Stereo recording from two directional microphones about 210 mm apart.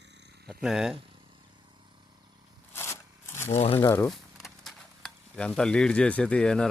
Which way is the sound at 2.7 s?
10° left (ahead or behind).